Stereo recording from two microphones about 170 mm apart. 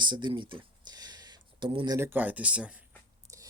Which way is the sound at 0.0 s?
25° right (ahead or behind).